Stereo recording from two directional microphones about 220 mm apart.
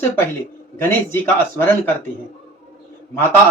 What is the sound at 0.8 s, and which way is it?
Speech, 10° left (ahead or behind).